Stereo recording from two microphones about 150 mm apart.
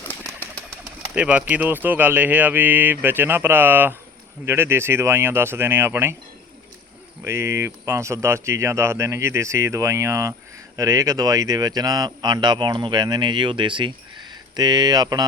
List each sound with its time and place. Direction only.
0.1 s bird: 10° left (ahead or behind)
1.1 s speech: 10° right (ahead or behind)
7.3 s speech: 20° right (ahead or behind)